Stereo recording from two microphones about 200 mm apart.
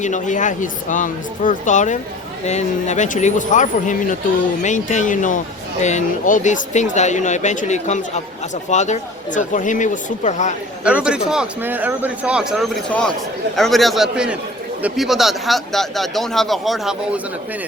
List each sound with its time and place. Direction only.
0.0 s speech: 40° left (ahead or behind)
10.8 s speech: 5° right (ahead or behind)